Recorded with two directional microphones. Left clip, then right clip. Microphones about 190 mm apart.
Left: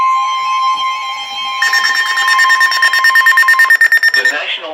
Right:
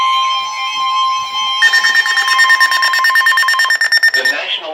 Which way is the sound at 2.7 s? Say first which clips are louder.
Left 2 dB; 5° left (ahead or behind).